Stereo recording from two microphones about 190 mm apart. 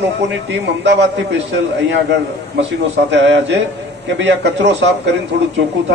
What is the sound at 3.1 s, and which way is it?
A man's voice, 70° right (ahead or behind).